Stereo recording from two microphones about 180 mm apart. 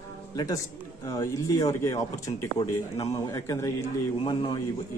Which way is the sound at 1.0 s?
15° left (ahead or behind).